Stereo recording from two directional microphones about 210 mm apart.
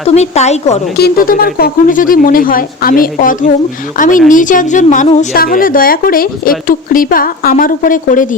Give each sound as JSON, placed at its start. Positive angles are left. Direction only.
{"t": 0.0, "sound": "a woman's voice", "side_deg": 30}
{"t": 0.9, "sound": "a woman's voice", "side_deg": 45}